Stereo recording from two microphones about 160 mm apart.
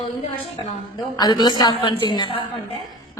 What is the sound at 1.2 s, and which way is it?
A woman's voice, 25° left (ahead or behind).